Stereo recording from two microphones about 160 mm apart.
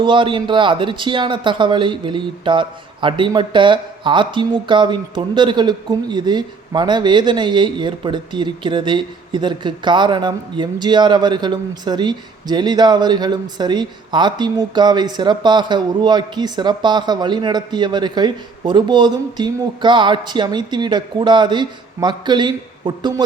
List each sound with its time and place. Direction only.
0.0 s speech: 30° right (ahead or behind)